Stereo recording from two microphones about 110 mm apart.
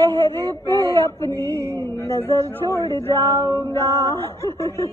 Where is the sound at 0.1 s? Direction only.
20° left (ahead or behind).